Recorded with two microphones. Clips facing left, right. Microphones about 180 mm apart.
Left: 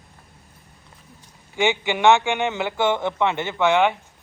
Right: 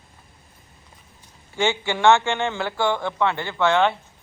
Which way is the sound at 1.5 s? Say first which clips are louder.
Left 1 dB; 15° left (ahead or behind).